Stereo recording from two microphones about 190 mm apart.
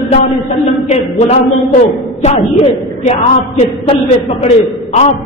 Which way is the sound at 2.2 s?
35° left (ahead or behind).